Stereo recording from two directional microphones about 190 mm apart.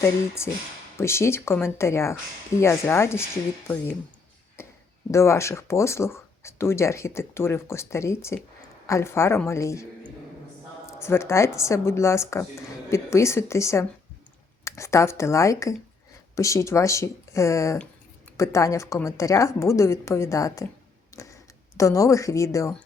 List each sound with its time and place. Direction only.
0.0 s speech: 15° left (ahead or behind)
4.6 s a sound: 15° left (ahead or behind)
5.1 s speech: 15° left (ahead or behind)
10.8 s speech: 15° left (ahead or behind)
21.1 s a sound: 15° left (ahead or behind)
21.8 s speech: 15° left (ahead or behind)